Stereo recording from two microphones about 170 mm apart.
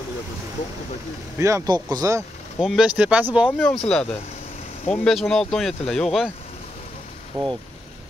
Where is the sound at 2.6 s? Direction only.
5° right (ahead or behind).